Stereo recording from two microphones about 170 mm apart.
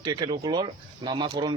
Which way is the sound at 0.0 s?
25° right (ahead or behind).